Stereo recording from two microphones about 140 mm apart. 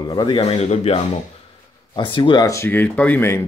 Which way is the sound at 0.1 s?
30° left (ahead or behind).